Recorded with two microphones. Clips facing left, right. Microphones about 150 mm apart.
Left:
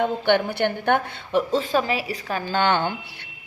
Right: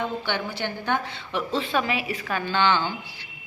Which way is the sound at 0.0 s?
55° left (ahead or behind).